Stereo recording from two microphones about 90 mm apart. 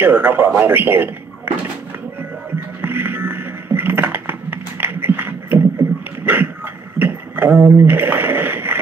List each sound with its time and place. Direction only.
0.0 s a man's voice: 20° right (ahead or behind)
2.8 s computer keyboard: 25° right (ahead or behind)
5.8 s beatboxing: 20° right (ahead or behind)
6.2 s a sound: 20° right (ahead or behind)